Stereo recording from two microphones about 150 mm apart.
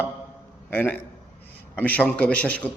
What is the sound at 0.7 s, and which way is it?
A man's voice, 10° left (ahead or behind).